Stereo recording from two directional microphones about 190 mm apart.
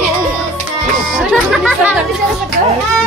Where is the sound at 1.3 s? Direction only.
Centre (ahead or behind).